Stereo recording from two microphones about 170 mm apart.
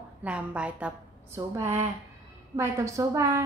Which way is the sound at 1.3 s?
20° right (ahead or behind).